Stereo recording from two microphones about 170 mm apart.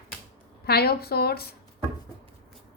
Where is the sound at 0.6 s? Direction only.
70° left (ahead or behind).